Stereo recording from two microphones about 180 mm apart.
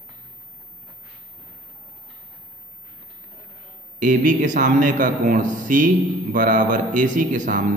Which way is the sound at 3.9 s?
45° right (ahead or behind).